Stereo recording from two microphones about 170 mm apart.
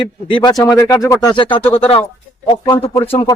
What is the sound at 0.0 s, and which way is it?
A man's voice, 30° left (ahead or behind).